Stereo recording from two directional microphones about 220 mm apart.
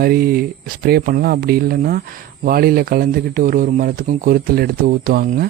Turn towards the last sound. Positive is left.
turn(degrees=-40)  # may be behind; listen again after turning